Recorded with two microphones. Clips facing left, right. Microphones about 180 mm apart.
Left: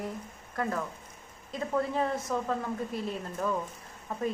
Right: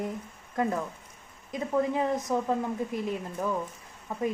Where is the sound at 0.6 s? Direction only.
20° right (ahead or behind).